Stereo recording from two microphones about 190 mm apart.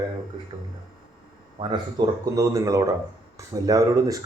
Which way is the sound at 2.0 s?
20° right (ahead or behind).